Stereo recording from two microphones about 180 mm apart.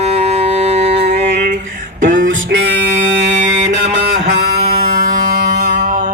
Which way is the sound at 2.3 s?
90° right.